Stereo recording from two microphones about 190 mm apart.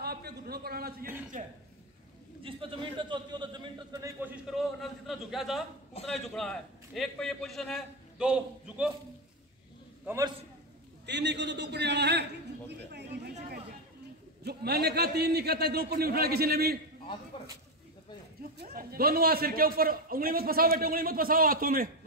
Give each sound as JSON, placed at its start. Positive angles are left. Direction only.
{"t": 0.0, "sound": "a man's voice", "side_deg": -55}
{"t": 1.0, "sound": "a man's voice", "side_deg": -10}
{"t": 2.4, "sound": "a man's voice", "side_deg": -25}
{"t": 10.0, "sound": "a man's voice", "side_deg": -15}
{"t": 11.1, "sound": "a sound", "side_deg": -65}
{"t": 14.4, "sound": "a man's voice", "side_deg": -55}
{"t": 18.6, "sound": "a man's voice", "side_deg": -55}